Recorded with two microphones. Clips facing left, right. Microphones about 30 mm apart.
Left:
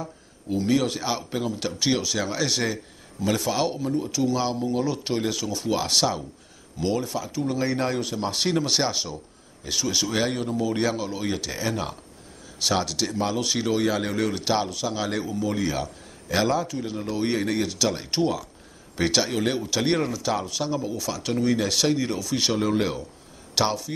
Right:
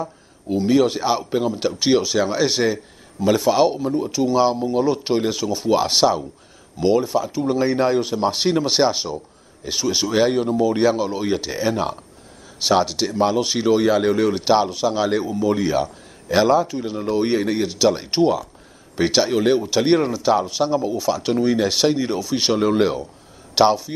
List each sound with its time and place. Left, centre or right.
0.7 s speech: centre